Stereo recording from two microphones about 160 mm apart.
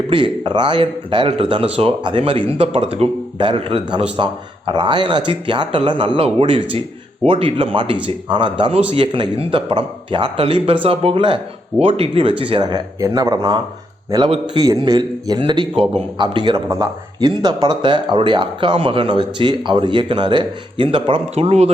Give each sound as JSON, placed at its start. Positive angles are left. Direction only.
{"t": 0.1, "sound": "a man's voice", "side_deg": -30}